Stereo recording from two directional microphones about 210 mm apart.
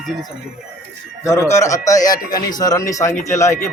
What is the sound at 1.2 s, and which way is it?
A man's voice, 15° left (ahead or behind).